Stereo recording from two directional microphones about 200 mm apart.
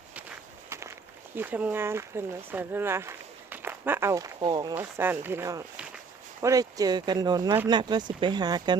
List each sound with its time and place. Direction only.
0.7 s walk: 15° right (ahead or behind)
1.4 s speech: 10° right (ahead or behind)